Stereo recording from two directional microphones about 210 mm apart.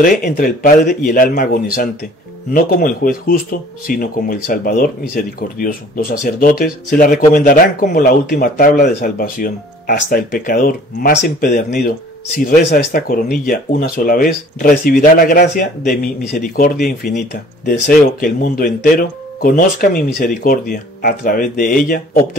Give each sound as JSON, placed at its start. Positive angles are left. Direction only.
{"t": 0.0, "sound": "speech", "side_deg": 40}